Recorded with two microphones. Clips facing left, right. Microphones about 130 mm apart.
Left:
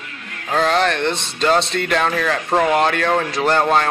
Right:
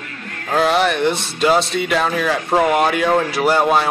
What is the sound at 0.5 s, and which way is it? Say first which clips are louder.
A man's voice: right 1 dB; 10° right (ahead or behind).